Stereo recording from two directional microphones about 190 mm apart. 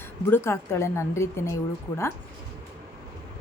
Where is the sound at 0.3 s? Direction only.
10° left (ahead or behind).